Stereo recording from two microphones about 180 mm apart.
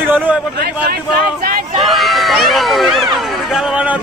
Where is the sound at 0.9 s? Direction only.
55° right (ahead or behind).